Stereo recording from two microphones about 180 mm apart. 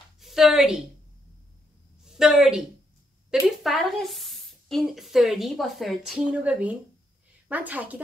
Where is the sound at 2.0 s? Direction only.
5° right (ahead or behind).